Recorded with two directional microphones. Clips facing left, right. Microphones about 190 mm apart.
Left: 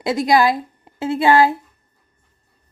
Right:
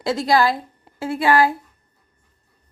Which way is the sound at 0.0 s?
20° left (ahead or behind).